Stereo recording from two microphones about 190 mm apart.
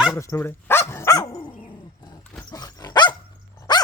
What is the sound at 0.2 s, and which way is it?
Speech, 15° left (ahead or behind).